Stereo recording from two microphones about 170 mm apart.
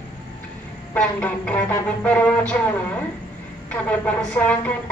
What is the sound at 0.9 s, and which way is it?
Speech, 10° left (ahead or behind).